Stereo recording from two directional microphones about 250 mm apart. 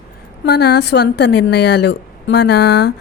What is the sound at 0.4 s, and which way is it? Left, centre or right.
A woman's voice, left.